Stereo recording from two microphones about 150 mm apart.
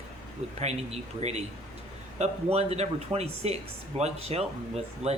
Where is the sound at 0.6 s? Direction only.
45° right (ahead or behind).